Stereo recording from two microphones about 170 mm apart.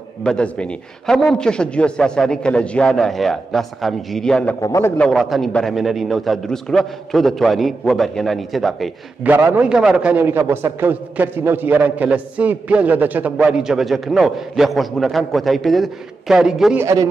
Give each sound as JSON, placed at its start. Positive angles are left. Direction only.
{"t": 0.2, "sound": "a man's voice", "side_deg": 5}
{"t": 4.6, "sound": "a man's voice", "side_deg": 20}
{"t": 4.9, "sound": "a man's voice", "side_deg": 5}
{"t": 9.3, "sound": "a man's voice", "side_deg": -10}
{"t": 16.8, "sound": "a man's voice", "side_deg": -20}